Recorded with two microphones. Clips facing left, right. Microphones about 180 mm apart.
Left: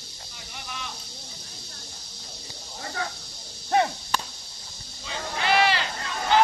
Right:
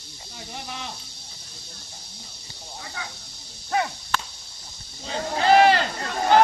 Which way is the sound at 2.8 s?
50° left (ahead or behind).